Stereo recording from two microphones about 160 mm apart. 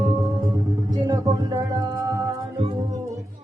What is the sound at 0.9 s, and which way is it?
Music, 20° right (ahead or behind).